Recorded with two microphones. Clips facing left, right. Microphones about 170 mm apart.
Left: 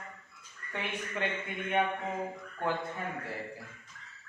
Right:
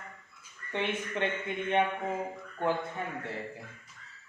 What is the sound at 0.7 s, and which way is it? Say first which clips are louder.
Speech: right 5 dB; 25° right (ahead or behind).